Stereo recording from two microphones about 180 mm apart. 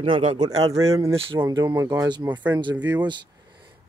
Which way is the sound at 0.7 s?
15° right (ahead or behind).